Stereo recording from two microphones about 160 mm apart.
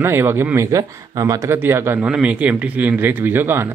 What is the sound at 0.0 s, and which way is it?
Speech, 15° right (ahead or behind).